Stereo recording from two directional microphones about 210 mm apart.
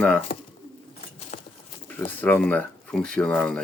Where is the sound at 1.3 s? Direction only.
35° left (ahead or behind).